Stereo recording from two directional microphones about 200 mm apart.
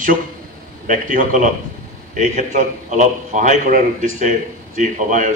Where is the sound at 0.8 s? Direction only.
40° right (ahead or behind).